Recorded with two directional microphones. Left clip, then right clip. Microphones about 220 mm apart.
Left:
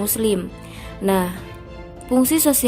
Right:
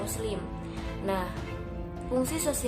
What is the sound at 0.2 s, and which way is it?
A woman's voice, 40° left (ahead or behind).